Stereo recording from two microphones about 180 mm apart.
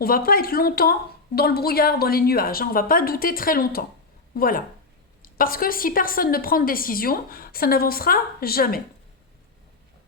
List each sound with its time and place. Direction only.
0.0 s a woman's voice: 55° left (ahead or behind)